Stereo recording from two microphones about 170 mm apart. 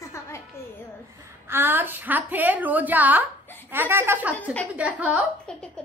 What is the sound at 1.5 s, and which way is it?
A woman's voice, 10° right (ahead or behind).